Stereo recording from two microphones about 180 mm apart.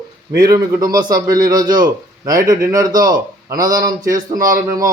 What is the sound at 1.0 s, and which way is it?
A man's voice, 20° right (ahead or behind).